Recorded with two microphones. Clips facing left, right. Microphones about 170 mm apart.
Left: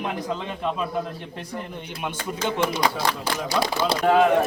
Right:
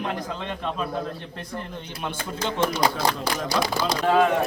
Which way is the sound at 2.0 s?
15° left (ahead or behind).